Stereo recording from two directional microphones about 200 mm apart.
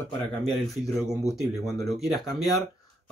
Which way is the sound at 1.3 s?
Centre (ahead or behind).